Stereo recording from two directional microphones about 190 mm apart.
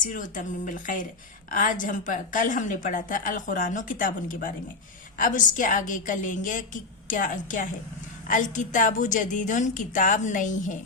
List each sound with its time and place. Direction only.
0.0 s a woman's voice: 45° left (ahead or behind)